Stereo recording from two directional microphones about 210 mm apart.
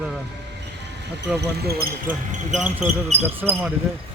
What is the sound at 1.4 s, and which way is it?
Speech, 50° right (ahead or behind).